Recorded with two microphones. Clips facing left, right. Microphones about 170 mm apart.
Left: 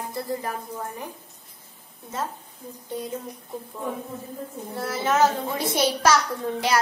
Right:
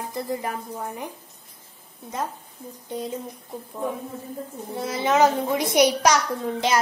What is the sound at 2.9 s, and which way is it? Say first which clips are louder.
Speech: right 1 dB; 20° right (ahead or behind).